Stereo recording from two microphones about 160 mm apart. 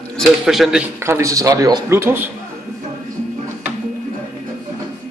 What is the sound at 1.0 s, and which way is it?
A man's voice, 20° right (ahead or behind).